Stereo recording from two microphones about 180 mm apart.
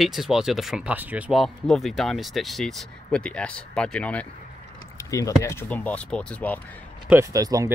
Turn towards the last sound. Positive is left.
turn(degrees=-20)  # may be behind; listen again after turning